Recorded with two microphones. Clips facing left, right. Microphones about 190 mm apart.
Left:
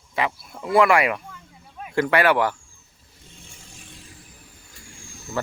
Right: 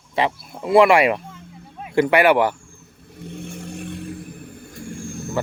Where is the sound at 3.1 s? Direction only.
60° right (ahead or behind).